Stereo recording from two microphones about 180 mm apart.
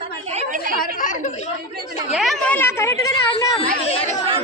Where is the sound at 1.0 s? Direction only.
45° left (ahead or behind).